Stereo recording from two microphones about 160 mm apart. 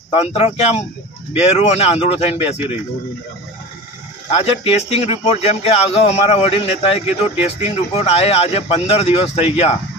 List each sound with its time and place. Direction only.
0.1 s speech: 40° left (ahead or behind)
4.3 s speech: 40° left (ahead or behind)